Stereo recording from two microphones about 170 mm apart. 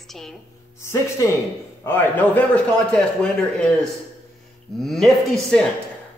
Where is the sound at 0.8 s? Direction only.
15° left (ahead or behind).